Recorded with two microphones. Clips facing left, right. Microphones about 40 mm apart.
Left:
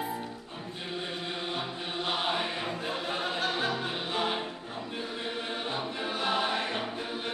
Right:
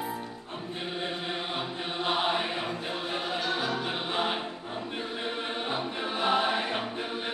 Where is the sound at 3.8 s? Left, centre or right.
Centre.